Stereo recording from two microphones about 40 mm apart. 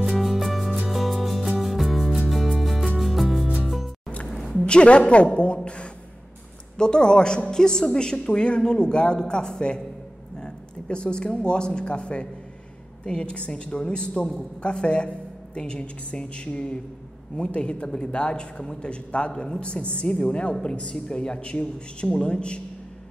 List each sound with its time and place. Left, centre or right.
0.2 s music: centre
4.3 s a sound: centre
4.6 s a woman's voice: left
6.8 s a woman's voice: left